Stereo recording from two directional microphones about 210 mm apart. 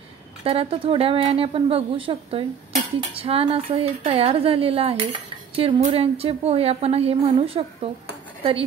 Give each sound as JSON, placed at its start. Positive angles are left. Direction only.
{"t": 0.4, "sound": "a woman's voice", "side_deg": -25}